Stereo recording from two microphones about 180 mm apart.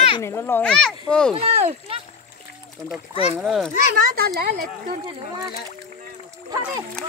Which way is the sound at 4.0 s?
60° right (ahead or behind).